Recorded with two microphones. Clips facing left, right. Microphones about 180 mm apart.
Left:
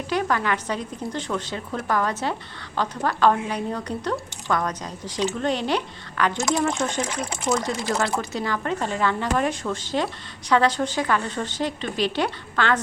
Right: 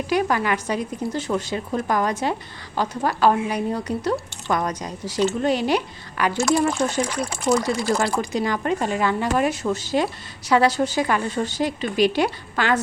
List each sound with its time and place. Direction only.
0.1 s speech: 10° right (ahead or behind)
7.0 s speech: 25° left (ahead or behind)
7.4 s speech: 10° right (ahead or behind)